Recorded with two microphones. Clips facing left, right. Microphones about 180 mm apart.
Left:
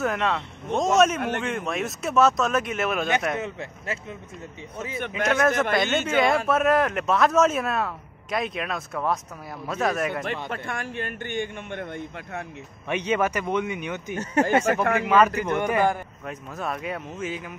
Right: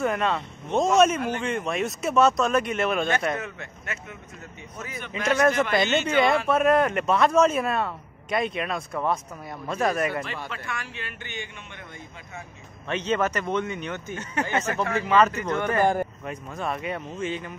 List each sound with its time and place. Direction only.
0.0 s speech: centre (ahead or behind)
3.3 s speech: 30° left (ahead or behind)
5.0 s speech: 55° left (ahead or behind)
5.4 s speech: centre (ahead or behind)
10.2 s a man's voice: 50° left (ahead or behind)
12.8 s a man's voice: 10° left (ahead or behind)
14.1 s speech: 40° left (ahead or behind)
14.7 s speech: 55° left (ahead or behind)
15.0 s a man's voice: 10° left (ahead or behind)
16.3 s speech: centre (ahead or behind)